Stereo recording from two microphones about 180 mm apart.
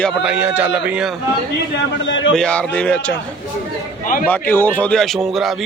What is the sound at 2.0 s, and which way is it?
Speech, 90° left.